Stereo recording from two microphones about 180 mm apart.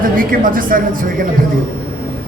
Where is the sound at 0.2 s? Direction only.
50° right (ahead or behind).